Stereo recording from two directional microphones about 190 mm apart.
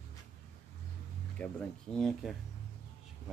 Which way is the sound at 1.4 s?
5° left (ahead or behind).